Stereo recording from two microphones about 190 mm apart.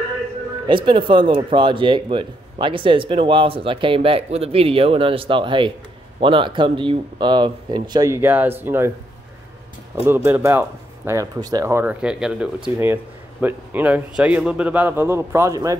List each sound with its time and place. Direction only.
0.7 s speech: 25° right (ahead or behind)
10.0 s speech: 10° right (ahead or behind)